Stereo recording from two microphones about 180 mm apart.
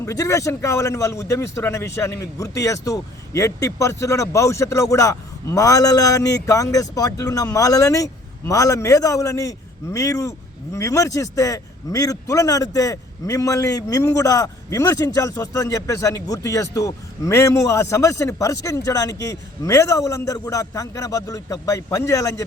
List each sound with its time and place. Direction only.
0.0 s a man's voice: 20° left (ahead or behind)